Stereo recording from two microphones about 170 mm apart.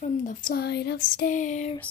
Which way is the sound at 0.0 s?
50° left (ahead or behind).